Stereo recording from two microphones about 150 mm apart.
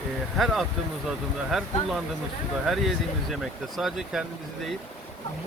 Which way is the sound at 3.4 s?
Centre (ahead or behind).